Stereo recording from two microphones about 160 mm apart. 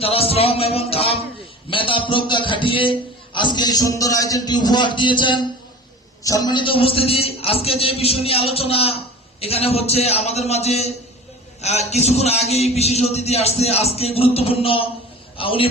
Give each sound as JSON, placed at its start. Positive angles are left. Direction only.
{"t": 0.0, "sound": "a man's voice", "side_deg": 35}